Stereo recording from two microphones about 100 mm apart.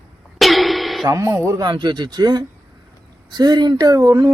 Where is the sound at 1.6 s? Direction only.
50° right (ahead or behind).